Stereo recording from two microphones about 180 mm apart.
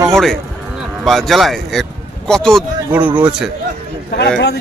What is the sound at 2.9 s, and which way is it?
Speech, 10° right (ahead or behind).